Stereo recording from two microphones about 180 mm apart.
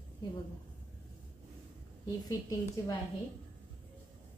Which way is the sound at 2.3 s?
20° left (ahead or behind).